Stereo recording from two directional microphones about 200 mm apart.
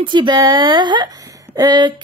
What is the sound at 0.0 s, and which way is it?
Speech, 25° right (ahead or behind).